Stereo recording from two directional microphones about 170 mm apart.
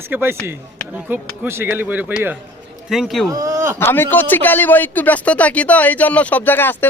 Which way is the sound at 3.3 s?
20° right (ahead or behind).